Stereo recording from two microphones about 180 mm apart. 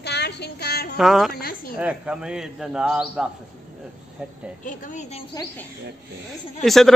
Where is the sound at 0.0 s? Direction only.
65° left (ahead or behind).